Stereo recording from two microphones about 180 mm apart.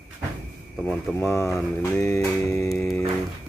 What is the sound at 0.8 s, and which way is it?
Speech, 10° left (ahead or behind).